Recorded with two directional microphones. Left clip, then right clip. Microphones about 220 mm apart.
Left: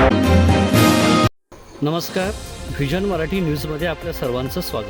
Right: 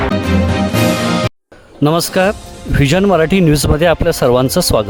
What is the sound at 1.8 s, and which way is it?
Speech, 55° right (ahead or behind).